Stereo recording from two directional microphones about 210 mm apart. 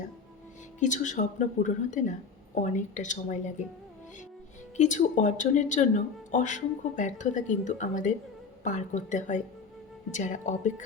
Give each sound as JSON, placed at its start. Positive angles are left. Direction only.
{"t": 0.8, "sound": "speech", "side_deg": 35}
{"t": 4.8, "sound": "speech", "side_deg": 35}